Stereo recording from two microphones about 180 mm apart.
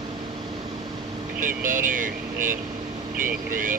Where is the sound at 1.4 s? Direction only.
50° right (ahead or behind).